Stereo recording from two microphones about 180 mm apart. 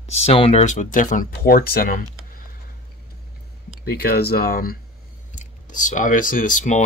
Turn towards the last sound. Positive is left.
turn(degrees=45)  # may be behind; listen again after turning